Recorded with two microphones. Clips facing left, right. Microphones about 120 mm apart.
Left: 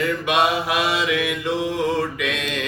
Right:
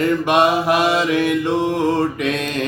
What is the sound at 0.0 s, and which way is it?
Mantra, 45° right (ahead or behind).